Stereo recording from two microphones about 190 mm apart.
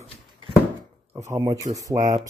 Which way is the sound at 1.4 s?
20° right (ahead or behind).